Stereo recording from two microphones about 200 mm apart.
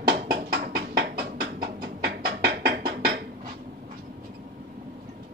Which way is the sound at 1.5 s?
50° right (ahead or behind).